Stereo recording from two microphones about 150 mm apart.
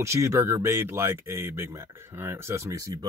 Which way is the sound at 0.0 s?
20° right (ahead or behind).